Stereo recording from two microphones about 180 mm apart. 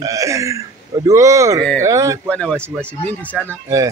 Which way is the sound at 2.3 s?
5° left (ahead or behind).